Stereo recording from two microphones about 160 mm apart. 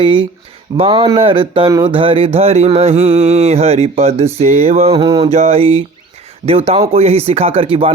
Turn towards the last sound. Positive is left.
turn(degrees=-35)  # may be behind; listen again after turning